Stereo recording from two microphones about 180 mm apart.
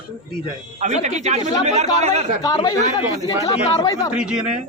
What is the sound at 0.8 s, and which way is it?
Speech, 40° right (ahead or behind).